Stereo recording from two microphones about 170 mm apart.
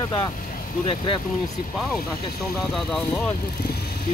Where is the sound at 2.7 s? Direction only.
5° left (ahead or behind).